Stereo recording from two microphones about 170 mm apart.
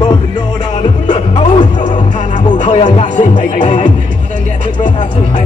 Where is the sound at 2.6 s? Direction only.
40° left (ahead or behind).